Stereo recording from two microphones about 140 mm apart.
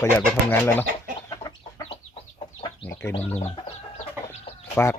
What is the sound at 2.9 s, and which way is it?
Chicken, 15° left (ahead or behind).